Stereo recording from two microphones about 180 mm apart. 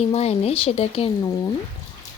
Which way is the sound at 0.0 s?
35° left (ahead or behind).